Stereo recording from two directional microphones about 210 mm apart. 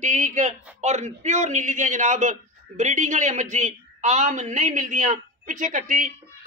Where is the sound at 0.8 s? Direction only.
35° right (ahead or behind).